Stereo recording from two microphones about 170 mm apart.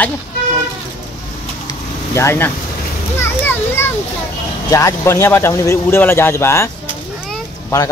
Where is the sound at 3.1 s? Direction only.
10° left (ahead or behind).